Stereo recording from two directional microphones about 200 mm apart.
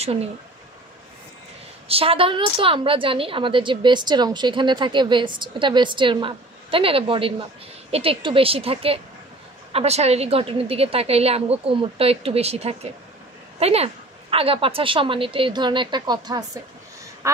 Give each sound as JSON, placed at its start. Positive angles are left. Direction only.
{"t": 0.0, "sound": "speech", "side_deg": -30}
{"t": 1.9, "sound": "a woman's voice", "side_deg": -30}